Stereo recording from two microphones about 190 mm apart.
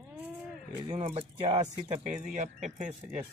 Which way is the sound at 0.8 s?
30° right (ahead or behind).